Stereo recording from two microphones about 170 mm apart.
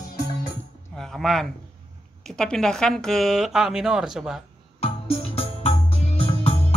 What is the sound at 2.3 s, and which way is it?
A woman's voice, 5° left (ahead or behind).